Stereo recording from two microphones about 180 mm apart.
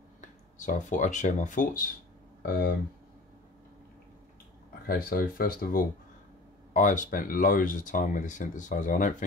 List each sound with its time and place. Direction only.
0.6 s speech: 45° left (ahead or behind)
4.8 s speech: 55° left (ahead or behind)